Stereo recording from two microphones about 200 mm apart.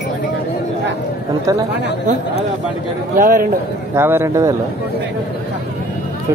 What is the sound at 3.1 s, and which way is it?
Speech, 40° right (ahead or behind).